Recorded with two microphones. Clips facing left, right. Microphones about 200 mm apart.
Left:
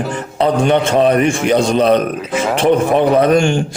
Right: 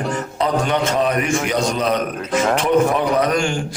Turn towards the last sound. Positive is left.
turn(degrees=25)  # may be behind; listen again after turning